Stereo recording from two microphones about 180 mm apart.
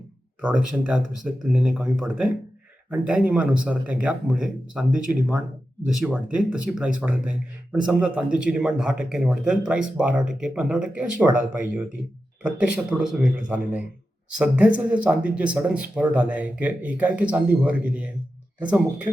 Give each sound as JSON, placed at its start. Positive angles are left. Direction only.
{"t": 0.4, "sound": "speech", "side_deg": -5}
{"t": 12.4, "sound": "speech", "side_deg": -5}